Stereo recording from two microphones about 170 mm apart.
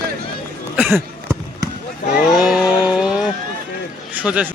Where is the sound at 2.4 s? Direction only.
Centre (ahead or behind).